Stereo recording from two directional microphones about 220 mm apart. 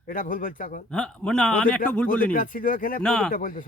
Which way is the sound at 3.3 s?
40° left (ahead or behind).